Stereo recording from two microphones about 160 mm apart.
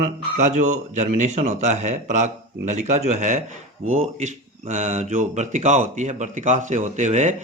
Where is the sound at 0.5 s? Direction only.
50° right (ahead or behind).